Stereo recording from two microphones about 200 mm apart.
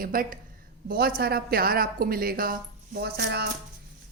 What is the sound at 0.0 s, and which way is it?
A woman's voice, 45° right (ahead or behind).